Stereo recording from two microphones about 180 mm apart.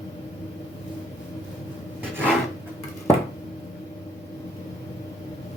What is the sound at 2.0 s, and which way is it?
Filing, 10° right (ahead or behind).